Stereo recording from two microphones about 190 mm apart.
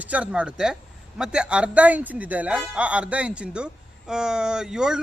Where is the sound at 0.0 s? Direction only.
5° right (ahead or behind).